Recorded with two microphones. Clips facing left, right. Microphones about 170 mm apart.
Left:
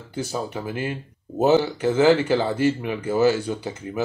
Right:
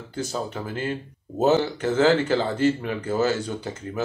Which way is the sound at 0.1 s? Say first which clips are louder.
Left 1 dB; 10° left (ahead or behind).